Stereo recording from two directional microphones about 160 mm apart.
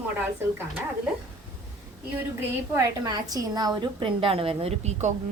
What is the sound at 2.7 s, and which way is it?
A woman's voice, 20° right (ahead or behind).